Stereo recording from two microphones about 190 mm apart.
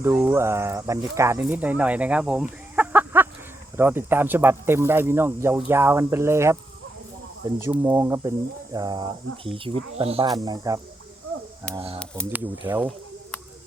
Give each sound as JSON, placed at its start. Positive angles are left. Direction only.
{"t": 0.0, "sound": "speech", "side_deg": -10}
{"t": 10.2, "sound": "speech", "side_deg": -20}
{"t": 11.9, "sound": "speech", "side_deg": 5}
{"t": 12.3, "sound": "speech", "side_deg": -10}